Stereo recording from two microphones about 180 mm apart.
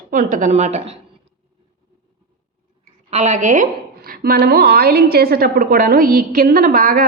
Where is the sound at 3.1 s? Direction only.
40° right (ahead or behind).